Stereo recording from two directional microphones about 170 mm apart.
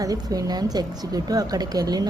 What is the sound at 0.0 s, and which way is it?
Speech, 20° right (ahead or behind).